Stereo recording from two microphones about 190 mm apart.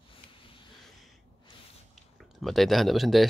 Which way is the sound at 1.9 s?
Centre (ahead or behind).